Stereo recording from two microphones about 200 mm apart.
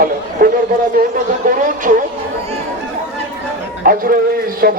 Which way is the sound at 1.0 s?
45° right (ahead or behind).